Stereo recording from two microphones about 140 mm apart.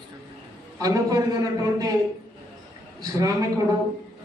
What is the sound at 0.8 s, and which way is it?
A man's voice, 25° right (ahead or behind).